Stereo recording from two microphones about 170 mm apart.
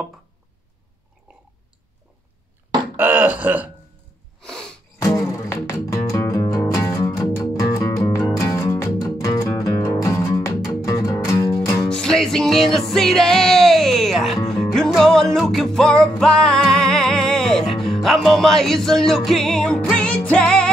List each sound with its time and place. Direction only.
3.0 s burping: 10° right (ahead or behind)
4.4 s sneeze: 5° left (ahead or behind)
4.9 s music: 20° left (ahead or behind)
11.9 s music: 5° left (ahead or behind)